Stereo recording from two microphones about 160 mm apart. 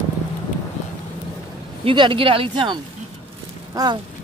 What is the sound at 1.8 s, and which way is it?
Speech, 30° right (ahead or behind).